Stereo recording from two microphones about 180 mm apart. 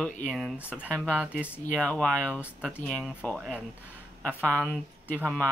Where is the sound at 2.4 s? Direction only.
5° right (ahead or behind).